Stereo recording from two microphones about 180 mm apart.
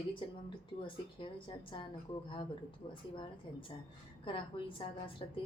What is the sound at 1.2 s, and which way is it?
A woman's voice, 30° left (ahead or behind).